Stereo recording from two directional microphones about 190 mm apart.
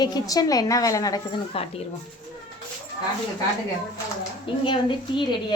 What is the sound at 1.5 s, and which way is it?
Speech, 30° left (ahead or behind).